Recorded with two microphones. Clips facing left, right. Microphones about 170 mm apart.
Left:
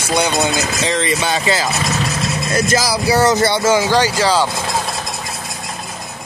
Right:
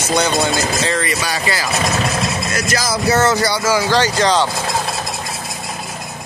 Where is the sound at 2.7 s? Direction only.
15° left (ahead or behind).